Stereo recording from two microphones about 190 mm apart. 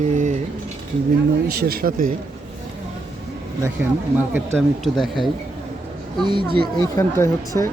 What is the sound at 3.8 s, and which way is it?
Speech, 5° right (ahead or behind).